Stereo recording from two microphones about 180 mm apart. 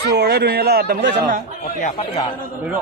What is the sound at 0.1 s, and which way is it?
A man's voice, 65° right (ahead or behind).